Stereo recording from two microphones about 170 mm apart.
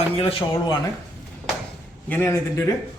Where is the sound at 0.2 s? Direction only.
35° left (ahead or behind).